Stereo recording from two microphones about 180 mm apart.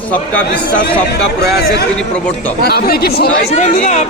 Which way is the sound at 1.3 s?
65° left (ahead or behind).